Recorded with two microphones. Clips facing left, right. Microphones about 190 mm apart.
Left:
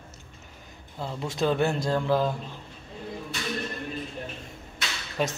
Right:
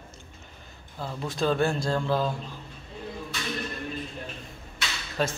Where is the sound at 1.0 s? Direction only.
20° left (ahead or behind).